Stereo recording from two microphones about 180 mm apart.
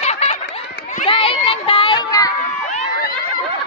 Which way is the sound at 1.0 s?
30° left (ahead or behind).